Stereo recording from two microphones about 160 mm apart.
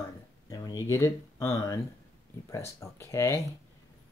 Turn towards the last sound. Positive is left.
turn(degrees=15)  # may be behind; listen again after turning